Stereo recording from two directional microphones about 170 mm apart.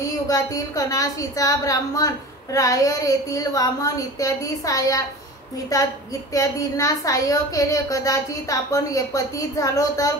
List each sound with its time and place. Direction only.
0.3 s a woman's voice: 20° left (ahead or behind)